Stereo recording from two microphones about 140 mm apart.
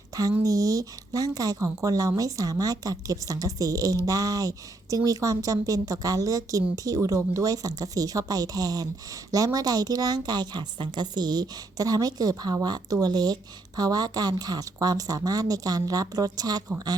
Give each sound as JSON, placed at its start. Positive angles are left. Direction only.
{"t": 0.1, "sound": "speech", "side_deg": -25}